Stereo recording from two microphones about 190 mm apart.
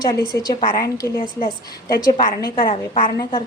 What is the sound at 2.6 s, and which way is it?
Speech, 30° left (ahead or behind).